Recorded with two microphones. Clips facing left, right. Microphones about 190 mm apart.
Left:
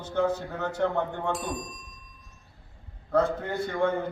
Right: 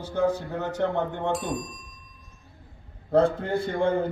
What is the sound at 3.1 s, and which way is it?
Speech, 30° right (ahead or behind).